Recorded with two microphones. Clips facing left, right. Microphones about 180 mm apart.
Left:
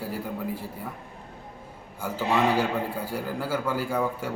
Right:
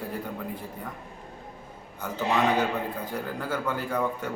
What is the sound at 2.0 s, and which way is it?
A man's voice, 10° left (ahead or behind).